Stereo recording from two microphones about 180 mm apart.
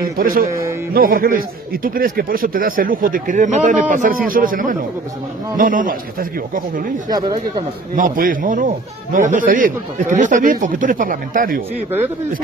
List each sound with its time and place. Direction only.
0.0 s a man's voice: 55° right (ahead or behind)
7.1 s speech: 25° right (ahead or behind)
7.9 s a man's voice: 50° right (ahead or behind)